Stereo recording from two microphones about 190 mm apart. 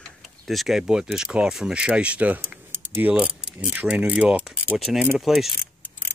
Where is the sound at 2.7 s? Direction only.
10° right (ahead or behind).